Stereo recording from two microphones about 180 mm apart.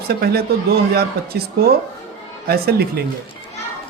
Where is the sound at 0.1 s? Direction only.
60° right (ahead or behind).